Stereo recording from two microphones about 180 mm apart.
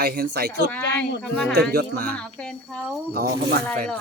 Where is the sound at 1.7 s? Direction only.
60° right (ahead or behind).